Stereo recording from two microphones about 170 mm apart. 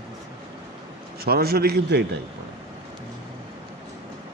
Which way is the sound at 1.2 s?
65° right (ahead or behind).